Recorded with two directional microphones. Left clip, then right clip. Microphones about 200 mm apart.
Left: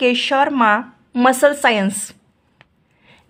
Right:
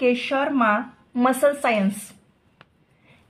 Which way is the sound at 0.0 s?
50° left (ahead or behind).